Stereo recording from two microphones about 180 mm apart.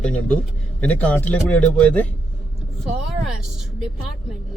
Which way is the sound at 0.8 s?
10° left (ahead or behind).